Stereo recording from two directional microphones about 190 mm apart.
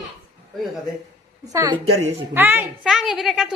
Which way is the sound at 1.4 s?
20° right (ahead or behind).